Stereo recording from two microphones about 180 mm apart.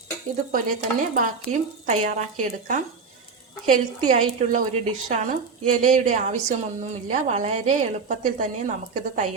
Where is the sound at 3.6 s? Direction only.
45° right (ahead or behind).